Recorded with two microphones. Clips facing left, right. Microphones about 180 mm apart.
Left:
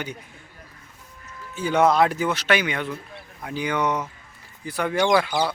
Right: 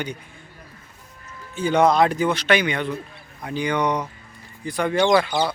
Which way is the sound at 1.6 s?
5° left (ahead or behind).